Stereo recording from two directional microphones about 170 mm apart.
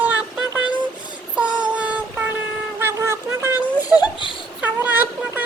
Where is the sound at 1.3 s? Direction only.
5° right (ahead or behind).